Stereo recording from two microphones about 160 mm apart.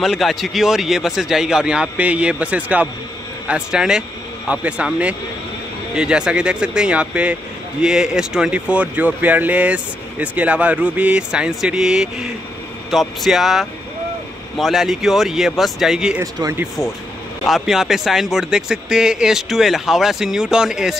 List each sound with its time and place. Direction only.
0.0 s speech: centre (ahead or behind)
16.2 s speech: 20° right (ahead or behind)
17.5 s speech: centre (ahead or behind)